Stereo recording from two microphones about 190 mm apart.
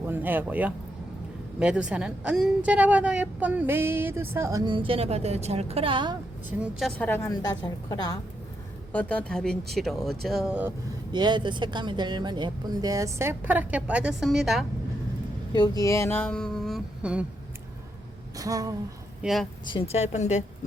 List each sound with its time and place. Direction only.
0.0 s a woman's voice: 10° right (ahead or behind); by 6.1 s 25° right (ahead or behind)
6.6 s speech: centre (ahead or behind)
7.3 s a woman's voice: 20° left (ahead or behind)
8.9 s speech: 5° left (ahead or behind)
11.1 s speech: 25° right (ahead or behind); by 14.6 s centre (ahead or behind)
15.5 s speech: 20° left (ahead or behind); by 17.2 s 5° right (ahead or behind)
18.3 s speech: 20° right (ahead or behind)
19.2 s speech: centre (ahead or behind)
19.6 s a woman's voice: 30° left (ahead or behind)